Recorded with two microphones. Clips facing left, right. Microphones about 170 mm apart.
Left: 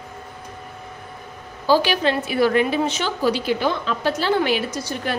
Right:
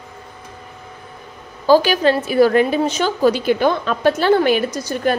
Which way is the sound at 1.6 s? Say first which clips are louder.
Right 5 dB; 45° right (ahead or behind).